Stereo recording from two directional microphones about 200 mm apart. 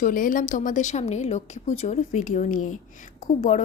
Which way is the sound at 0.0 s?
40° left (ahead or behind).